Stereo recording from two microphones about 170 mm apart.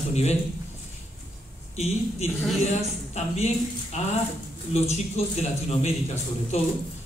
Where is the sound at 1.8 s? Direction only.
40° left (ahead or behind).